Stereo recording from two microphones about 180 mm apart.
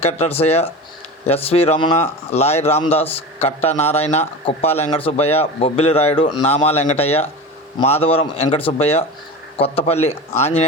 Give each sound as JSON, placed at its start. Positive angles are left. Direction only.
{"t": 0.0, "sound": "speech", "side_deg": 35}